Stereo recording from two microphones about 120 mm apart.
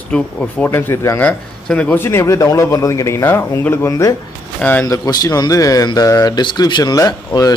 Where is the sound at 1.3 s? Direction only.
10° left (ahead or behind).